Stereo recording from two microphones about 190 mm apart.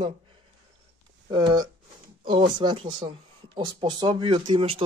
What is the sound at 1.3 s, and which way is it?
Speech, 25° right (ahead or behind).